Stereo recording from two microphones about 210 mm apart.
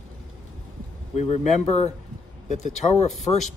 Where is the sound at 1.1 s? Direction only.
30° left (ahead or behind).